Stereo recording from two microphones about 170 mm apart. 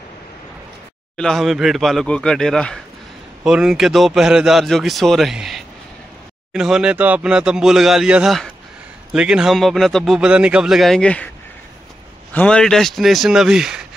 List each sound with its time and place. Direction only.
1.1 s a man's voice: 5° left (ahead or behind)
12.3 s a man's voice: 10° left (ahead or behind)